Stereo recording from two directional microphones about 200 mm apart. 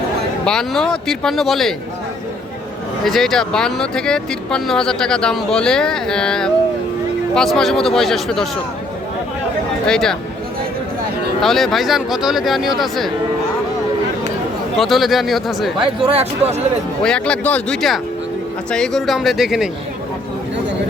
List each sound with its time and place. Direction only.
0.4 s speech: 5° left (ahead or behind)
3.0 s speech: centre (ahead or behind)
9.8 s speech: 5° left (ahead or behind)
11.3 s speech: centre (ahead or behind)
14.8 s speech: centre (ahead or behind)
16.0 s speech: 30° right (ahead or behind)
17.0 s speech: 5° left (ahead or behind)